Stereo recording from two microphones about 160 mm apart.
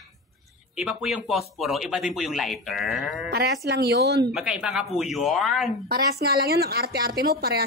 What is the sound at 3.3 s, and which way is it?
Speech, 85° right.